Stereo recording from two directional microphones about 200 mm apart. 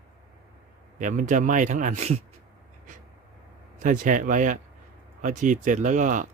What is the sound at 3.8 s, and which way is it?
Speech, 40° right (ahead or behind).